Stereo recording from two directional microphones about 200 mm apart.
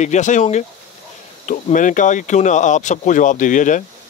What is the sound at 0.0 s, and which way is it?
Speech, 35° left (ahead or behind).